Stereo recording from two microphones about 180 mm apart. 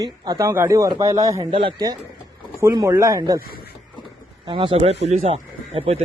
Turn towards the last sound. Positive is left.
turn(degrees=-35)  # may be behind; listen again after turning